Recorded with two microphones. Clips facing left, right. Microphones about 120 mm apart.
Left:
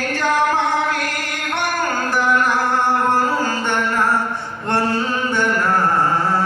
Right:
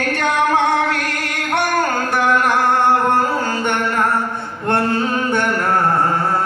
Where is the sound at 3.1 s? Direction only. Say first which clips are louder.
Right 1 dB; 60° right (ahead or behind).